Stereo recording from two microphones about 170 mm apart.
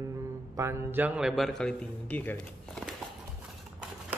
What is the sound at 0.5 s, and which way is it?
A man's voice, 15° right (ahead or behind).